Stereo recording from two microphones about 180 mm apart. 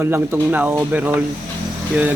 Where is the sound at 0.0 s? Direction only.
15° right (ahead or behind).